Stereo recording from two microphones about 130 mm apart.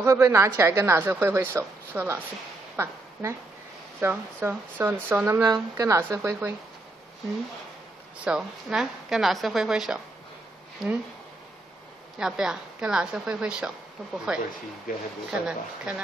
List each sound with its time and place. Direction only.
0.0 s a woman's voice: 20° right (ahead or behind)
5.4 s a woman's voice: 25° right (ahead or behind)
8.2 s a woman's voice: 5° right (ahead or behind)
12.2 s a woman's voice: 5° right (ahead or behind)